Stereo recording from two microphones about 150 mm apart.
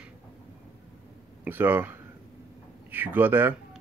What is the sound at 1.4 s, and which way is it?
Speech, 15° right (ahead or behind).